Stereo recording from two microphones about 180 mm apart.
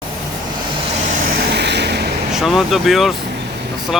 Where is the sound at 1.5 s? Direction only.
70° right (ahead or behind).